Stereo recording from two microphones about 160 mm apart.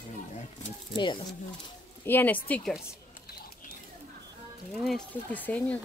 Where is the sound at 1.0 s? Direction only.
30° left (ahead or behind).